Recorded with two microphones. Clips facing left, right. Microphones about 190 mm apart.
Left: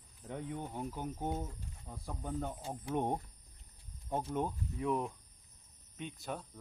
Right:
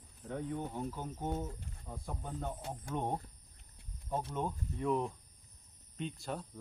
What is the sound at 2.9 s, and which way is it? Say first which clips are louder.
Speech: left 2 dB; 15° left (ahead or behind).